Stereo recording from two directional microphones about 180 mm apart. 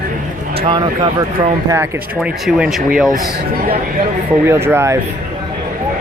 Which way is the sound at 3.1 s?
55° right (ahead or behind).